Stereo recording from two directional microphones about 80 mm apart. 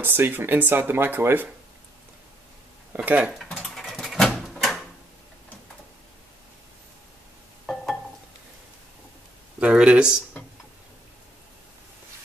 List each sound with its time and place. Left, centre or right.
0.0 s speech: right
2.9 s dishes: centre
3.7 s dog: centre
4.6 s drawer open or close: centre
7.6 s stir: centre
9.6 s speech: centre